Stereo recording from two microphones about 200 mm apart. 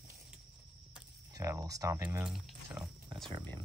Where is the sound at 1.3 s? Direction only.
15° right (ahead or behind).